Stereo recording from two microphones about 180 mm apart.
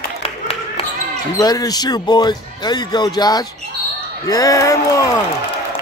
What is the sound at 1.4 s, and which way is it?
A man's voice, 20° left (ahead or behind).